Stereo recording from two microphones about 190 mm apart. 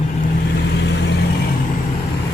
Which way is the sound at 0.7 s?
65° left (ahead or behind).